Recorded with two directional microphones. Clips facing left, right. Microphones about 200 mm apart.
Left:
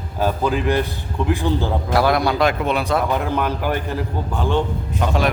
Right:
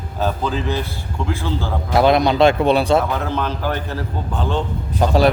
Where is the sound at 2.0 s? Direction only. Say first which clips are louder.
Right 4 dB; 20° right (ahead or behind).